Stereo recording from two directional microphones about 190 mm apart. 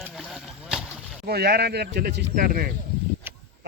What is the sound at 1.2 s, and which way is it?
A man's voice, 55° right (ahead or behind).